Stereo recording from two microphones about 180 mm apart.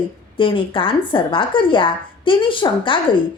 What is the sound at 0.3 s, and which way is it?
A woman's voice, 30° left (ahead or behind).